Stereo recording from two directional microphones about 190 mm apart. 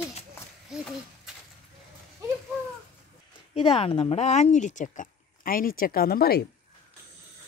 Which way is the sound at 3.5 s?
30° left (ahead or behind).